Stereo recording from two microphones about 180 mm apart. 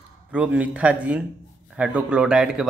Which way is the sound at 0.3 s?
5° right (ahead or behind).